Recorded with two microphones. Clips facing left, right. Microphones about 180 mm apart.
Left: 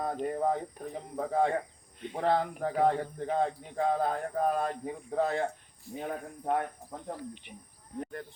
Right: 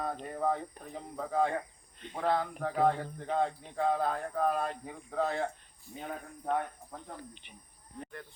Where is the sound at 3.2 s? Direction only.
35° left (ahead or behind).